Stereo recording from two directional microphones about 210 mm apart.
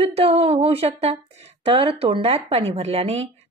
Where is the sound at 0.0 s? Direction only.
30° right (ahead or behind).